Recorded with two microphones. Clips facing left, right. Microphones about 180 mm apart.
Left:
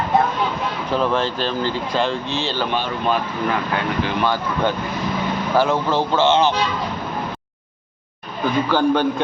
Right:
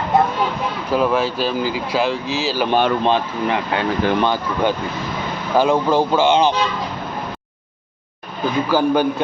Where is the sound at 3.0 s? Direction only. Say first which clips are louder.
Right 2 dB; 25° right (ahead or behind).